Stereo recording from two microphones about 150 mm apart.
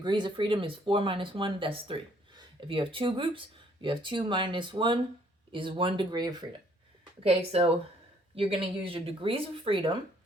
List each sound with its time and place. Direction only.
0.0 s speech: 30° right (ahead or behind)
7.2 s speech: 40° right (ahead or behind)